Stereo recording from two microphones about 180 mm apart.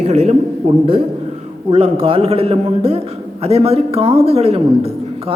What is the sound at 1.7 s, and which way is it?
A man's voice, 30° right (ahead or behind).